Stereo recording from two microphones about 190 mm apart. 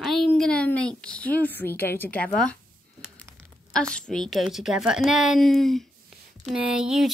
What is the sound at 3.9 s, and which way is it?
Speech, 5° left (ahead or behind).